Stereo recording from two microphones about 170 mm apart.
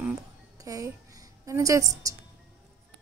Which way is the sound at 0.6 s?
20° right (ahead or behind).